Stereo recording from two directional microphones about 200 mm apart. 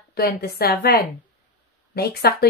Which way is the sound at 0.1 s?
50° left (ahead or behind).